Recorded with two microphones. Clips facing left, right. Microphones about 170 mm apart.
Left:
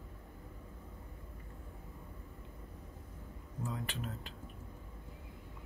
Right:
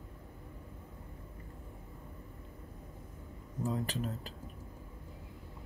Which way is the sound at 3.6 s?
40° right (ahead or behind).